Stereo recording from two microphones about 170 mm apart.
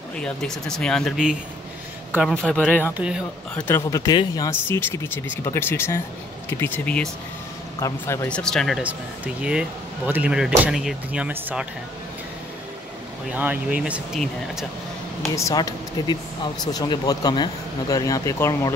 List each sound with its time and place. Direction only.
0.2 s speech: 5° left (ahead or behind)
2.3 s speech: 5° left (ahead or behind)
2.8 s speech: 10° right (ahead or behind)
3.5 s speech: 15° left (ahead or behind); by 11.6 s 10° right (ahead or behind)
13.3 s speech: 10° right (ahead or behind)
15.3 s speech: 20° left (ahead or behind)